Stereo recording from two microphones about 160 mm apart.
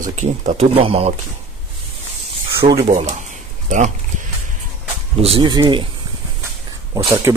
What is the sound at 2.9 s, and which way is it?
Speech, 45° right (ahead or behind).